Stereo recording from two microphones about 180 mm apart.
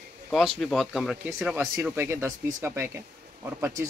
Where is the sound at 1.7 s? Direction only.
15° right (ahead or behind).